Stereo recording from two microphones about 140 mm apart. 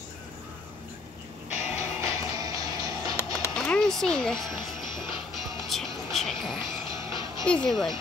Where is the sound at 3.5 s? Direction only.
5° left (ahead or behind).